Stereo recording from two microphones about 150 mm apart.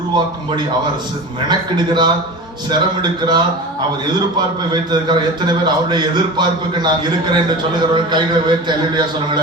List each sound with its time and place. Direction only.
1.5 s a man's voice: 30° right (ahead or behind)